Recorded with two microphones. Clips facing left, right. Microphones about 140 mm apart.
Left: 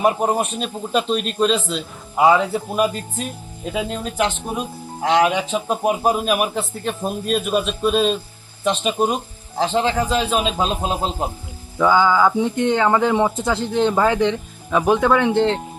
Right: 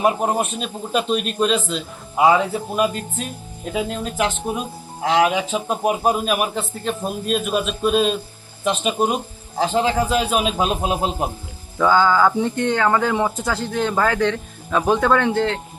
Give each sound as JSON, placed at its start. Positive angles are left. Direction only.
{"t": 0.0, "sound": "a man's voice", "side_deg": 0}
{"t": 11.8, "sound": "speech", "side_deg": 15}